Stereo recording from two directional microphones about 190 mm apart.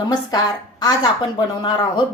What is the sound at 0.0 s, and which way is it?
A woman's voice, 20° left (ahead or behind).